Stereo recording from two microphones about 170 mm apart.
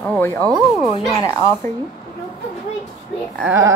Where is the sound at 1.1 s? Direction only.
20° left (ahead or behind).